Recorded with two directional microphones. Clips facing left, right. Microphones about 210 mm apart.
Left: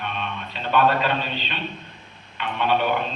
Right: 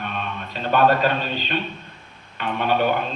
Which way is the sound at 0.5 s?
45° right (ahead or behind).